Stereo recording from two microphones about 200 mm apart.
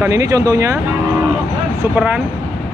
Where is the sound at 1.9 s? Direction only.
5° right (ahead or behind).